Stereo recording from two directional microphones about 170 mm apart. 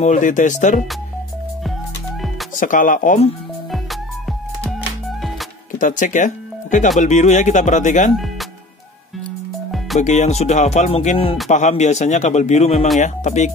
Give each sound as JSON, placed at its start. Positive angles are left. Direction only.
{"t": 0.0, "sound": "a man's voice", "side_deg": 45}
{"t": 2.5, "sound": "a man's voice", "side_deg": 50}
{"t": 3.7, "sound": "music", "side_deg": 0}
{"t": 5.8, "sound": "a man's voice", "side_deg": 50}
{"t": 9.9, "sound": "music", "side_deg": 45}
{"t": 11.5, "sound": "a man's voice", "side_deg": 45}